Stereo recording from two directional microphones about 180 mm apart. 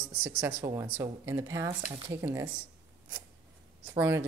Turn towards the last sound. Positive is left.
turn(degrees=-10)  # may be behind; listen again after turning